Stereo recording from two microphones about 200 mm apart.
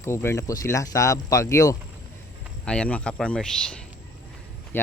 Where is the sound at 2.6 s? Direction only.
5° left (ahead or behind).